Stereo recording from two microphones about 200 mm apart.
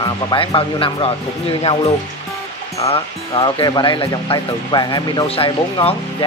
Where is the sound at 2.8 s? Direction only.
25° left (ahead or behind).